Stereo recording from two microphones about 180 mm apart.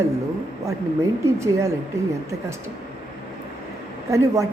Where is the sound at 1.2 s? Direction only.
15° right (ahead or behind).